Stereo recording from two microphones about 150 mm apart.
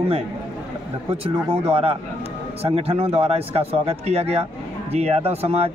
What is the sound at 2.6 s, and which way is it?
Speech, 40° right (ahead or behind).